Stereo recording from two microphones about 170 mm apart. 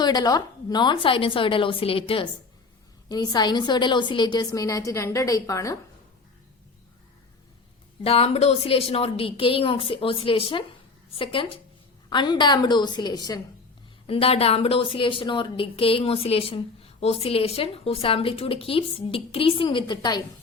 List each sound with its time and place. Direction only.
0.0 s a woman's voice: 25° left (ahead or behind)
8.0 s a woman's voice: 35° left (ahead or behind)
14.1 s a woman's voice: 35° left (ahead or behind)